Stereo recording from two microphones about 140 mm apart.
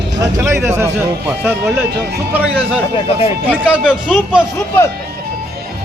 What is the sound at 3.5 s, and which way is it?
Speech, 10° right (ahead or behind).